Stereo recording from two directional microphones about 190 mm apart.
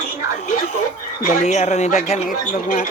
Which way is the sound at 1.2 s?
35° left (ahead or behind).